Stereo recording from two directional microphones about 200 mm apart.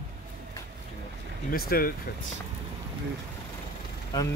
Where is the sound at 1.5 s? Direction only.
45° left (ahead or behind).